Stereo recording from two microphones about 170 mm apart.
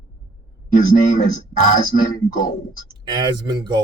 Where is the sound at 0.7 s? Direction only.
50° left (ahead or behind).